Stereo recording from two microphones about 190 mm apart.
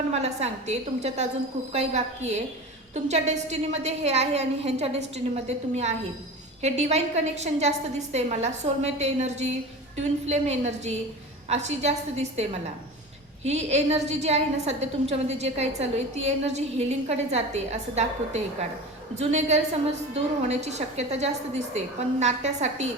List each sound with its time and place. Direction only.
0.1 s a woman's voice: 35° right (ahead or behind)